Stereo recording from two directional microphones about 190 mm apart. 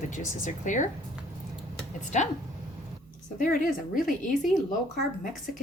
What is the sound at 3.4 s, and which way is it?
Speech, 45° left (ahead or behind).